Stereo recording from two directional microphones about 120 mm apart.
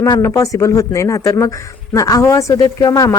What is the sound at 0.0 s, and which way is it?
A woman's voice, 25° left (ahead or behind).